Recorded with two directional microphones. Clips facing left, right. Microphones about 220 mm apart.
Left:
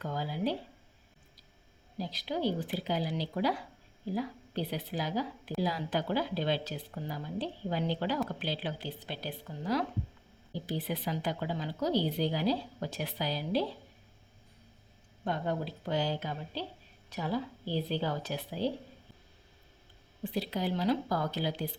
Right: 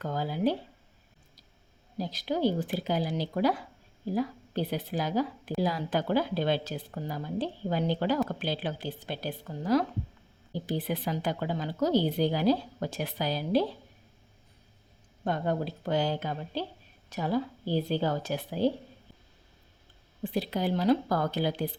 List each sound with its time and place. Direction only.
0.0 s speech: 50° right (ahead or behind)
2.0 s speech: 45° right (ahead or behind)
15.2 s speech: 50° right (ahead or behind)
20.3 s speech: 55° right (ahead or behind)